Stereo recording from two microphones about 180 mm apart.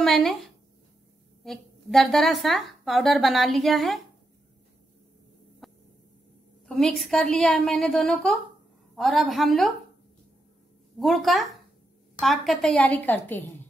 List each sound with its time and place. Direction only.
0.0 s a sound: centre (ahead or behind)
1.4 s a woman's voice: centre (ahead or behind)
5.6 s hum: centre (ahead or behind)
6.7 s a woman's voice: centre (ahead or behind)
11.0 s a woman's voice: centre (ahead or behind)